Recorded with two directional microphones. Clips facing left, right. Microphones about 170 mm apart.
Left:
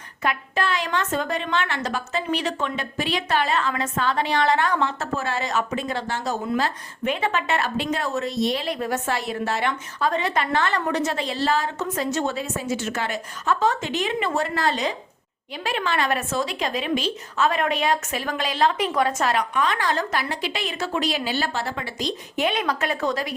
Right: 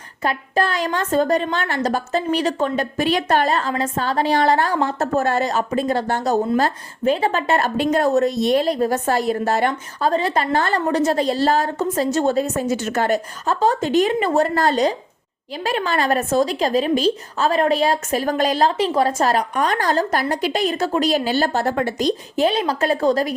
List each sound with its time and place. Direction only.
0.2 s a woman's voice: 35° right (ahead or behind)